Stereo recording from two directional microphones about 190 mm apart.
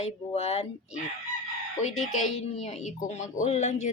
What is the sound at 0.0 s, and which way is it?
Speech, 35° left (ahead or behind).